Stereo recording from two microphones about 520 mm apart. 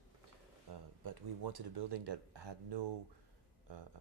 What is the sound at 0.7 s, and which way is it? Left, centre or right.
Speech, right.